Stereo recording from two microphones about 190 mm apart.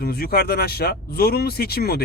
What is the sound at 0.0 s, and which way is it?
Speech, 55° left (ahead or behind).